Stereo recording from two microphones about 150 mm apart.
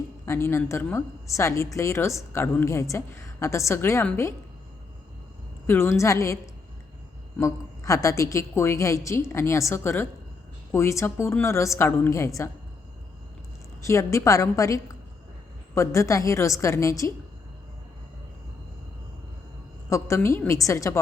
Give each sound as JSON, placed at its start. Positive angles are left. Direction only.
{"t": 0.3, "sound": "a woman's voice", "side_deg": 15}
{"t": 5.6, "sound": "a woman's voice", "side_deg": 15}
{"t": 13.8, "sound": "a woman's voice", "side_deg": 20}
{"t": 19.9, "sound": "a woman's voice", "side_deg": 20}